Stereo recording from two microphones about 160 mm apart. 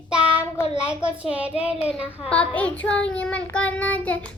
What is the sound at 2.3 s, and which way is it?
A child's voice, 10° left (ahead or behind).